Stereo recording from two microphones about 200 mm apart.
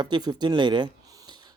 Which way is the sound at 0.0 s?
20° right (ahead or behind).